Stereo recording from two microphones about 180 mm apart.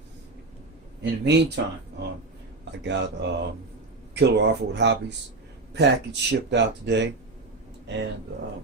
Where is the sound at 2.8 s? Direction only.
75° right (ahead or behind).